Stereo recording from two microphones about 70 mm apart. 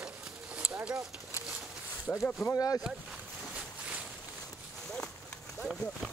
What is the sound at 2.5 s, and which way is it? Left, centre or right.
Speech, left.